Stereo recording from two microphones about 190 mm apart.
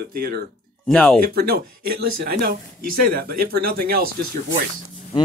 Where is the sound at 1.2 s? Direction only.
55° right (ahead or behind).